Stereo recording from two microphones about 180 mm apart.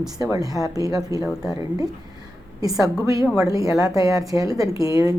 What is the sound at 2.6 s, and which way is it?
A woman's voice, 20° right (ahead or behind).